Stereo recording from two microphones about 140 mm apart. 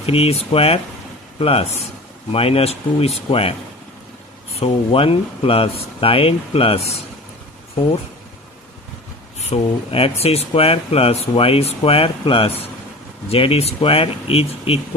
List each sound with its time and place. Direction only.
0.0 s speech: 45° left (ahead or behind)
4.6 s speech: 40° left (ahead or behind)
9.4 s speech: 45° left (ahead or behind)